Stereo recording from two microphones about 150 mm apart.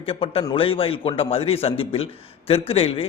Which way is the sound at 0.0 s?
40° left (ahead or behind).